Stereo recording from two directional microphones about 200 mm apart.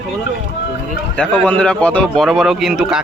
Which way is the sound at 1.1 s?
5° left (ahead or behind).